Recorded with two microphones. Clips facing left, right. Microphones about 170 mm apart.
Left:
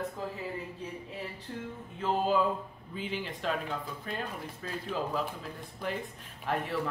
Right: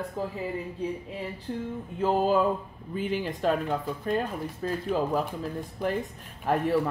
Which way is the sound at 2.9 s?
50° right (ahead or behind).